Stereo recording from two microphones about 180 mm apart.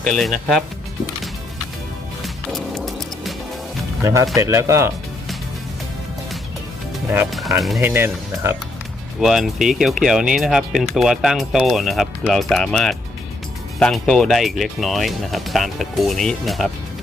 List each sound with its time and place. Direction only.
0.0 s speech: 5° left (ahead or behind)
2.2 s music: centre (ahead or behind)
4.0 s speech: 15° right (ahead or behind)
7.3 s speech: centre (ahead or behind)
7.8 s speech: 10° right (ahead or behind)
9.2 s speech: centre (ahead or behind)